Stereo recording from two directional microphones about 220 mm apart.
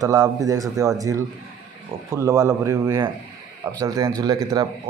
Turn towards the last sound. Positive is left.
turn(degrees=-15)  # may be behind; listen again after turning